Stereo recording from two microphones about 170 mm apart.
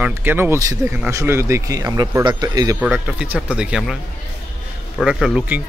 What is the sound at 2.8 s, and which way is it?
Speech, 5° right (ahead or behind).